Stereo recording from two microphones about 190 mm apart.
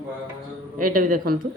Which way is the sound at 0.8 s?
45° right (ahead or behind).